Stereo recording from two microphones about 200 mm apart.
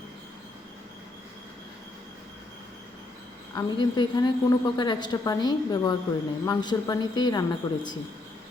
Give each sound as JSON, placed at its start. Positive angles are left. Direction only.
{"t": 3.5, "sound": "a woman's voice", "side_deg": 20}